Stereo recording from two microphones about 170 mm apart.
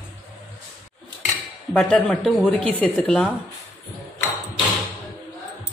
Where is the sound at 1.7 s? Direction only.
5° left (ahead or behind).